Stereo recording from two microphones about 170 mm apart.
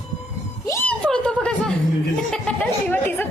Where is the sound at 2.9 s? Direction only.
10° left (ahead or behind).